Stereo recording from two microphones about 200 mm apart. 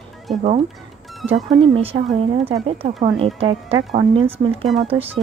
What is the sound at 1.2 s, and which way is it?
Speech, centre (ahead or behind).